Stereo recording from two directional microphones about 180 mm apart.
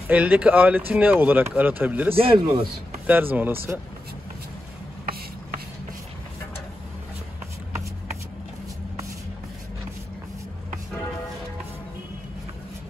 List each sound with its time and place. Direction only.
0.1 s speech: 10° right (ahead or behind)
2.1 s a man's voice: 30° right (ahead or behind)
3.1 s speech: 10° right (ahead or behind)